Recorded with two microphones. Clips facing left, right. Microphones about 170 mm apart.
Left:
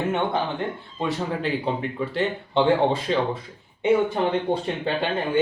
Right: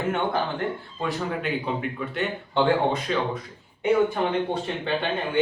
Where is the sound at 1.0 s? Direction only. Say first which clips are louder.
Left 2 dB; 30° left (ahead or behind).